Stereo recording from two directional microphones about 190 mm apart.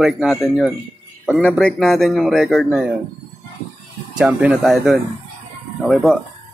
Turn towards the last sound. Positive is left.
turn(degrees=0)  # may be behind; listen again after turning